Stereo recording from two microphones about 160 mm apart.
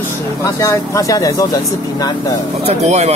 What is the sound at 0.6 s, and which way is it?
Speech, 20° left (ahead or behind).